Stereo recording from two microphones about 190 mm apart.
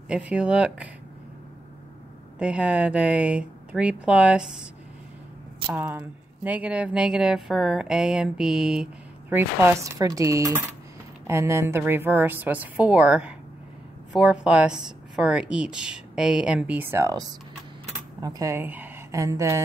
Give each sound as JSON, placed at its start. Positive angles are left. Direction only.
{"t": 0.1, "sound": "speech", "side_deg": -5}
{"t": 2.3, "sound": "speech", "side_deg": -5}
{"t": 5.7, "sound": "a woman's voice", "side_deg": -10}